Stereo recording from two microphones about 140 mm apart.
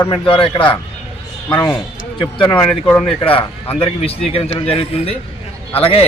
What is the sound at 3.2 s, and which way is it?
Speech, 40° left (ahead or behind).